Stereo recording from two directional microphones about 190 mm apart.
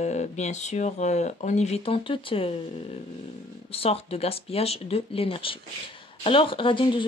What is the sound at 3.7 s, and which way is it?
Speech, 30° left (ahead or behind).